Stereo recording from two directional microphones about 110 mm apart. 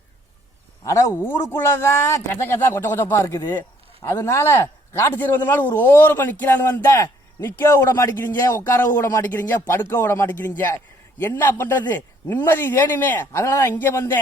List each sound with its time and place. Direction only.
0.9 s a man's voice: 30° left (ahead or behind)